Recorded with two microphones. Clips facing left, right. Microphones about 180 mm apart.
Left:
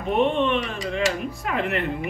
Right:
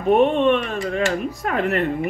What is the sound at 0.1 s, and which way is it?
A woman's voice, 45° right (ahead or behind).